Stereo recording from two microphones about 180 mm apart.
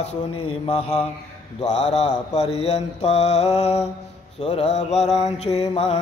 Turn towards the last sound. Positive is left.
turn(degrees=35)  # may be behind; listen again after turning